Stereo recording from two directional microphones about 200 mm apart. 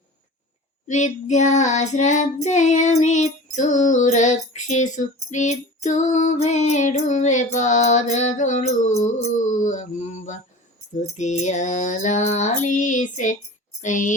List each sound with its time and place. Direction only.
0.9 s child singing: 35° left (ahead or behind)